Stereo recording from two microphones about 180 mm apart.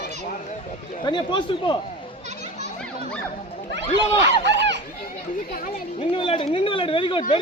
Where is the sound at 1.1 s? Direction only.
25° left (ahead or behind).